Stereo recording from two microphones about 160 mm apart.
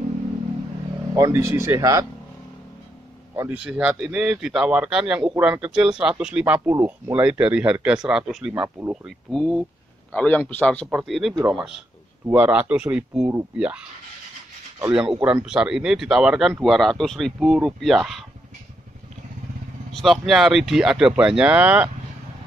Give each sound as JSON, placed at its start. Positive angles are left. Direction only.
{"t": 1.1, "sound": "speech", "side_deg": -15}
{"t": 3.3, "sound": "speech", "side_deg": -10}
{"t": 9.0, "sound": "a man's voice", "side_deg": 5}
{"t": 10.9, "sound": "speech", "side_deg": -5}
{"t": 12.3, "sound": "speech", "side_deg": -10}
{"t": 19.9, "sound": "speech", "side_deg": 0}